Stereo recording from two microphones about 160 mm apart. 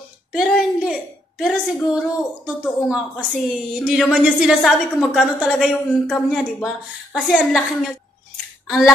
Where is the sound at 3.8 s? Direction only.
5° right (ahead or behind).